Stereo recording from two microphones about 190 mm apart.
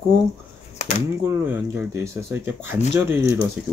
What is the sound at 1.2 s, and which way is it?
Speech, 15° right (ahead or behind).